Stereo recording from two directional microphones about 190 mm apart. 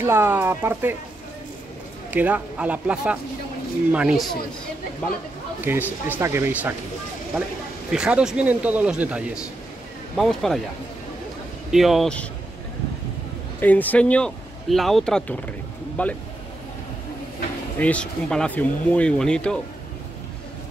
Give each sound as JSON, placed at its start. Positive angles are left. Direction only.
{"t": 0.0, "sound": "speech", "side_deg": -10}
{"t": 2.0, "sound": "speech", "side_deg": -10}
{"t": 5.6, "sound": "speech", "side_deg": -10}
{"t": 7.9, "sound": "speech", "side_deg": -5}
{"t": 11.7, "sound": "speech", "side_deg": 0}
{"t": 13.6, "sound": "speech", "side_deg": 10}
{"t": 17.7, "sound": "speech", "side_deg": 5}